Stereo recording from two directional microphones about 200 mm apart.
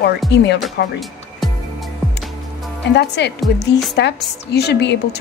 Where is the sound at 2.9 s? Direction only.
60° left (ahead or behind).